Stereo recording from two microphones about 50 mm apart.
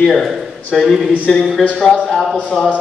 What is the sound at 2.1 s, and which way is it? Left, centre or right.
Speech, centre.